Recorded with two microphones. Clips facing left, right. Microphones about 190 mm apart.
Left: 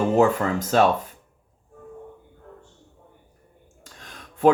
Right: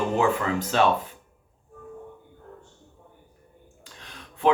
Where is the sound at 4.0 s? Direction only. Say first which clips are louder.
Left 8 dB; 45° left (ahead or behind).